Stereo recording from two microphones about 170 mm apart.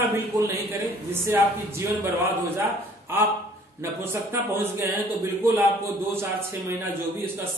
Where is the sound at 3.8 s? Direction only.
15° right (ahead or behind).